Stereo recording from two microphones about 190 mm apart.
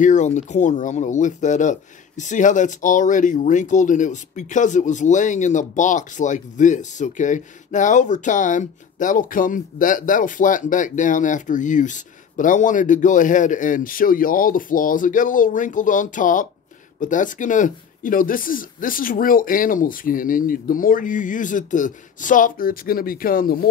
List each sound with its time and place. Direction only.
0.0 s speech: 40° left (ahead or behind)